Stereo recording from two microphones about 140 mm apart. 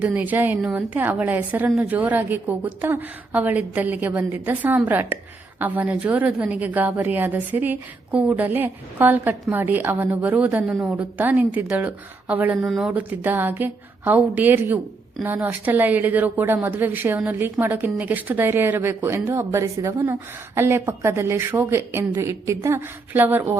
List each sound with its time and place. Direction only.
0.0 s a woman's voice: 10° right (ahead or behind)